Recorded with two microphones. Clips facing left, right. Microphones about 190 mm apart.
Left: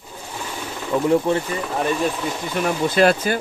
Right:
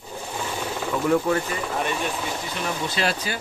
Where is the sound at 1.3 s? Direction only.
25° left (ahead or behind).